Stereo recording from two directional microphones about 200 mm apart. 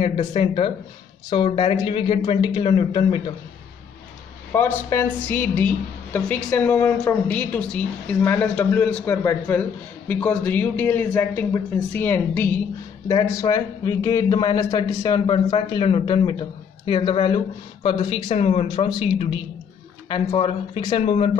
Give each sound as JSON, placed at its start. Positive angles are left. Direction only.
{"t": 0.0, "sound": "a man's voice", "side_deg": 30}
{"t": 4.5, "sound": "a woman's voice", "side_deg": 10}